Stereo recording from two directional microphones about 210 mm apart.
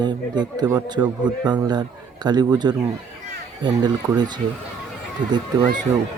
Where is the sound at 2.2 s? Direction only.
20° right (ahead or behind).